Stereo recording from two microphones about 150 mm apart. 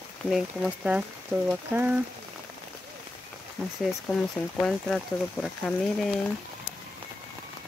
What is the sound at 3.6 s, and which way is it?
Speech, 15° right (ahead or behind).